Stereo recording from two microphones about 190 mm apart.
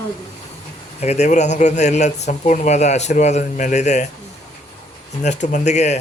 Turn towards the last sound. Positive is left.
turn(degrees=35)  # may be behind; listen again after turning